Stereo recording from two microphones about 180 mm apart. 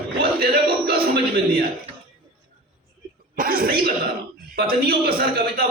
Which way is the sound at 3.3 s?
55° right (ahead or behind).